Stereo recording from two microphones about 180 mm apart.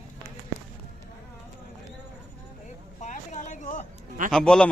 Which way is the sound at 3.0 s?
45° left (ahead or behind).